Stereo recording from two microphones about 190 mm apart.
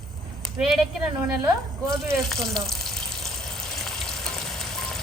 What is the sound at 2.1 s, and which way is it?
Water, centre (ahead or behind).